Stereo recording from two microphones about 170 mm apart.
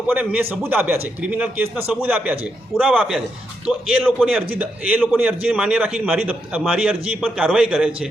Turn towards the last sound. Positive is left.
turn(degrees=-5)  # may be behind; listen again after turning